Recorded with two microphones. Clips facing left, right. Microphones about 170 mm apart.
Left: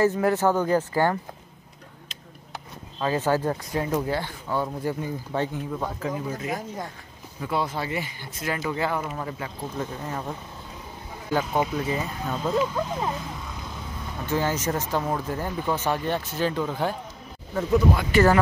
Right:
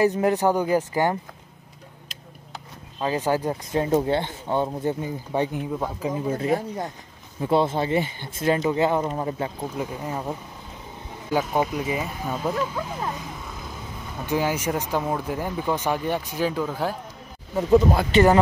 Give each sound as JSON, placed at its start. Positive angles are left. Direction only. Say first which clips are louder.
{"t": 0.0, "sound": "speech", "louder": "right 1 dB", "side_deg": -20}
{"t": 3.0, "sound": "speech", "louder": "even", "side_deg": -15}
{"t": 3.8, "sound": "speech", "louder": "right 6 dB", "side_deg": -30}
{"t": 6.3, "sound": "speech", "louder": "right 6 dB", "side_deg": -30}
{"t": 9.6, "sound": "speech", "louder": "right 2 dB", "side_deg": -10}
{"t": 11.3, "sound": "speech", "louder": "right 1 dB", "side_deg": -10}
{"t": 12.5, "sound": "speech", "louder": "left 3 dB", "side_deg": 15}
{"t": 14.2, "sound": "speech", "louder": "right 1 dB", "side_deg": -15}
{"t": 18.1, "sound": "speech", "louder": "right 2 dB", "side_deg": -25}